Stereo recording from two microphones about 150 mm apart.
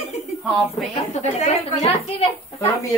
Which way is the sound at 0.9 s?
50° left (ahead or behind).